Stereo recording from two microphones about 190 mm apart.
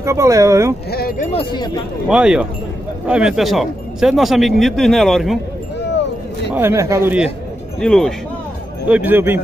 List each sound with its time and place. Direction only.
0.0 s speech: 15° right (ahead or behind)
0.9 s speech: 50° left (ahead or behind)
1.3 s speech: 25° left (ahead or behind)
2.0 s speech: 5° right (ahead or behind)
6.5 s speech: 15° right (ahead or behind)
7.8 s speech: 5° left (ahead or behind)
8.8 s speech: 10° right (ahead or behind)